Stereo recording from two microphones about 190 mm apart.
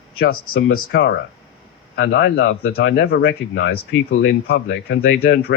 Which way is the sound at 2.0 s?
70° left (ahead or behind).